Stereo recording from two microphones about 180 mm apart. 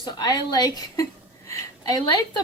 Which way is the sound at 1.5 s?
20° left (ahead or behind).